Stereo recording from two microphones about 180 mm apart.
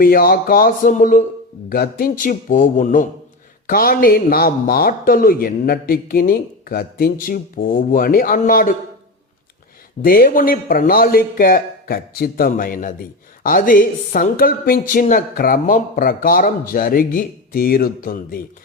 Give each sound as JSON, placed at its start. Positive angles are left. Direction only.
{"t": 0.0, "sound": "a woman's voice", "side_deg": 55}
{"t": 10.0, "sound": "a woman's voice", "side_deg": 55}